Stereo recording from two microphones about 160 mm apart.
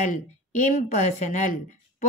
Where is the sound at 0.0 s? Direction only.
50° left (ahead or behind).